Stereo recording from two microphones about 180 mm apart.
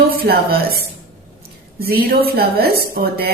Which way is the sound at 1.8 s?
60° right (ahead or behind).